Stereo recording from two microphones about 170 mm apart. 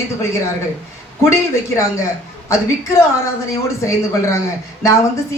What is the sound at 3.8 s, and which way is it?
Speech, 20° left (ahead or behind).